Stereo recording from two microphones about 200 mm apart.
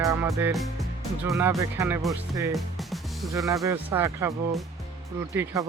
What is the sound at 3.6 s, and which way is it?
Speech, 15° right (ahead or behind).